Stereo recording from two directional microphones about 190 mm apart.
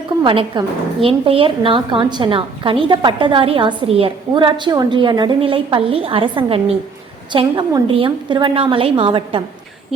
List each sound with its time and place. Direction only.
0.2 s a woman's voice: 25° right (ahead or behind)